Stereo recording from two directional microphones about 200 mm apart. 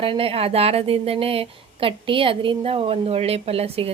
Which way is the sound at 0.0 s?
30° right (ahead or behind).